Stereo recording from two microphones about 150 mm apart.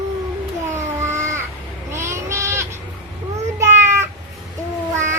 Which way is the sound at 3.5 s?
15° right (ahead or behind).